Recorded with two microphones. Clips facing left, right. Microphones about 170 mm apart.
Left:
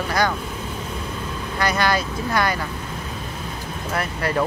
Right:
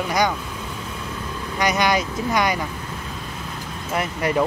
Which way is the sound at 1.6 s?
15° right (ahead or behind).